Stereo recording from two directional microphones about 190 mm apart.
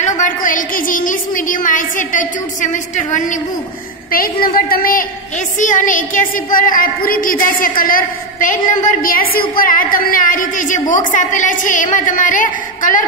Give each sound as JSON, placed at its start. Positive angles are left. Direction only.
{"t": 0.0, "sound": "a woman's voice", "side_deg": 45}